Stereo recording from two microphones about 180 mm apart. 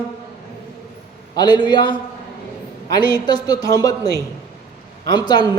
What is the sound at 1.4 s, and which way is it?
A man's voice, 25° left (ahead or behind).